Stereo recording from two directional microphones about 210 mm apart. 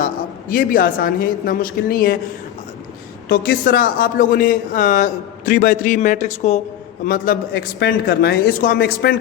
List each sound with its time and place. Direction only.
0.5 s speech: 45° left (ahead or behind)
3.2 s speech: 45° left (ahead or behind)
7.0 s speech: 45° left (ahead or behind)